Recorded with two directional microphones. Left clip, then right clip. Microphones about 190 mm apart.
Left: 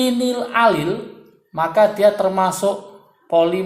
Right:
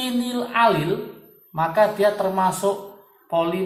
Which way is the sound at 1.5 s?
55° left (ahead or behind).